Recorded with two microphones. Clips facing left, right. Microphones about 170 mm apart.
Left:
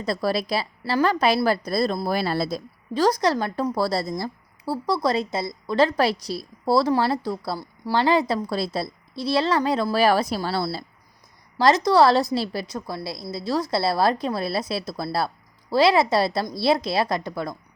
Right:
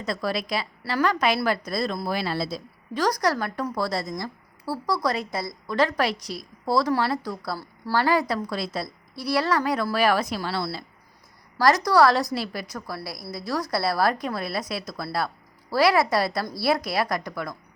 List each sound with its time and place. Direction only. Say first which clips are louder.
0.0 s a woman's voice: left 4 dB; 35° left (ahead or behind)
2.9 s a woman's voice: left 3 dB; 25° left (ahead or behind)
11.5 s a woman's voice: left 2 dB; 25° left (ahead or behind)